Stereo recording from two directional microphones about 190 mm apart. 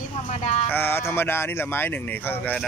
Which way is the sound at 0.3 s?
35° left (ahead or behind).